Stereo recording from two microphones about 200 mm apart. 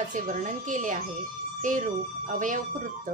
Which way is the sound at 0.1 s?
40° right (ahead or behind).